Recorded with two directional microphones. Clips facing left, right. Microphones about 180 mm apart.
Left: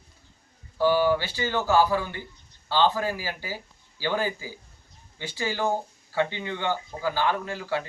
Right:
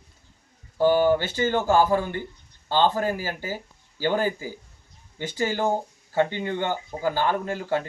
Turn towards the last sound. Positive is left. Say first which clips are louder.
# right 3 dB
turn(degrees=-50)  # may be behind; listen again after turning